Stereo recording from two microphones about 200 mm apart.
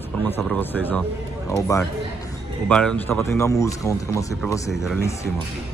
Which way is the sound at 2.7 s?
5° left (ahead or behind).